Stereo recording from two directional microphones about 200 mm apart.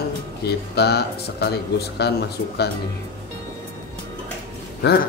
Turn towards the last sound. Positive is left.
turn(degrees=60)  # may be behind; listen again after turning